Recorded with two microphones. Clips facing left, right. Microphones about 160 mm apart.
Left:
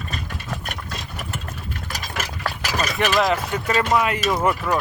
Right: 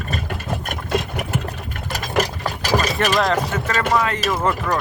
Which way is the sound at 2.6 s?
40° right (ahead or behind).